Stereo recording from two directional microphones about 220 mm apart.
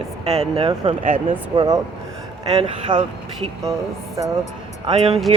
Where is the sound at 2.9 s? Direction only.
20° right (ahead or behind).